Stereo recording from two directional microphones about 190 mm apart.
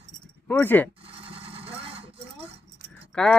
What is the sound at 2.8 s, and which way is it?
Keys jangling, 5° left (ahead or behind).